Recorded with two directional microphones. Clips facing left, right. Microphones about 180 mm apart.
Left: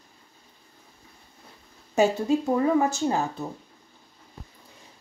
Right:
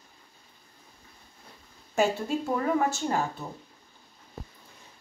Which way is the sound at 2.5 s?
20° left (ahead or behind).